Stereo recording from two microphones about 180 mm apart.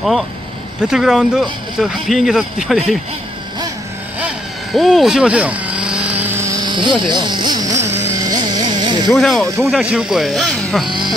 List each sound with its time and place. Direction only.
0.7 s speech: 5° right (ahead or behind)
4.7 s vehicle: centre (ahead or behind); by 7.7 s 25° right (ahead or behind)
8.1 s carnatic music: 20° right (ahead or behind)
9.1 s speech: centre (ahead or behind)